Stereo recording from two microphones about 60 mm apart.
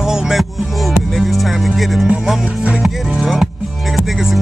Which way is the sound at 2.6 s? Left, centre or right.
Centre.